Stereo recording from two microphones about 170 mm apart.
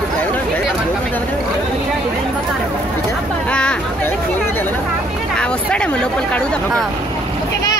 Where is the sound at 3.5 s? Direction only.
5° left (ahead or behind).